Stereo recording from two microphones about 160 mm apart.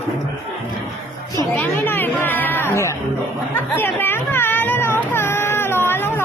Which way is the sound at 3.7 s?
15° left (ahead or behind).